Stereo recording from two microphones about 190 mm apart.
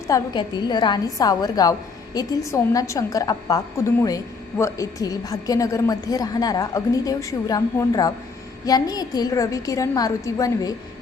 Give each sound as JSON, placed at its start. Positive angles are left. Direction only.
{"t": 0.1, "sound": "a woman's voice", "side_deg": 25}